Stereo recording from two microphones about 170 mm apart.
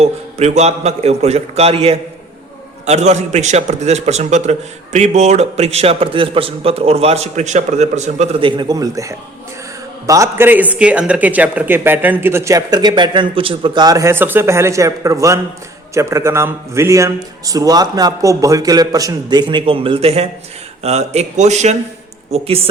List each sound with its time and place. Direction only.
0.0 s a man's voice: 40° right (ahead or behind)